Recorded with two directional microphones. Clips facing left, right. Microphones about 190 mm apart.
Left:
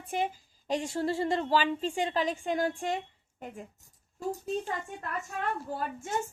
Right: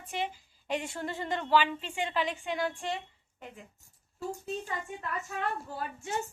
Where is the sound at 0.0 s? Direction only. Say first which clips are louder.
Left 4 dB; 50° left (ahead or behind).